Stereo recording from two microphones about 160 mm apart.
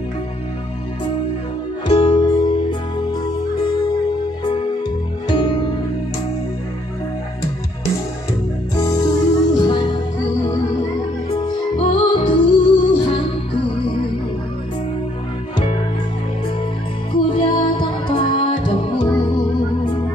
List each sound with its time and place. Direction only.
2.0 s music: 30° left (ahead or behind)
5.3 s music: 25° left (ahead or behind)
8.7 s music: 25° left (ahead or behind)
11.2 s music: 30° left (ahead or behind)
17.1 s music: 30° left (ahead or behind)